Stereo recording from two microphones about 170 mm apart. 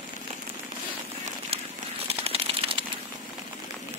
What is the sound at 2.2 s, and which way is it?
Typewriter, 35° right (ahead or behind).